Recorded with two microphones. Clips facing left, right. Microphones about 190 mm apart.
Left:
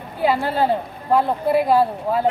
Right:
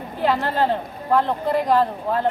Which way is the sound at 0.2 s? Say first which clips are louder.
Left 1 dB; 10° left (ahead or behind).